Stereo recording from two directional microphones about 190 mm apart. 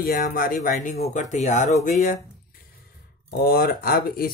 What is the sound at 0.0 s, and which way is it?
Speech, 50° left (ahead or behind).